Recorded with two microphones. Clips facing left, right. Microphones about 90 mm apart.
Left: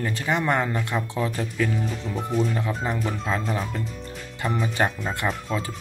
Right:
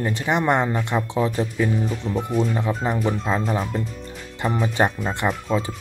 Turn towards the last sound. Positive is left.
turn(degrees=-5)  # may be behind; listen again after turning